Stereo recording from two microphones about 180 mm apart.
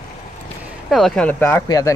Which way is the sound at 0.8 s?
Centre (ahead or behind).